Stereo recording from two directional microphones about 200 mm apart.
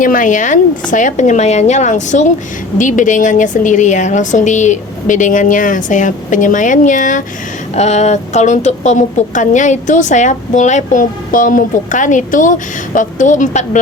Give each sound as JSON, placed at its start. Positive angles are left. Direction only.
{"t": 0.0, "sound": "a woman's voice", "side_deg": 40}